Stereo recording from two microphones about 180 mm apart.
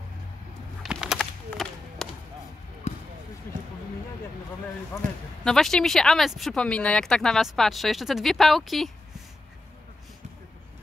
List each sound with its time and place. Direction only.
0.8 s a sound: centre (ahead or behind)
2.9 s basketball bounce: 40° left (ahead or behind)
5.4 s speech: 5° left (ahead or behind)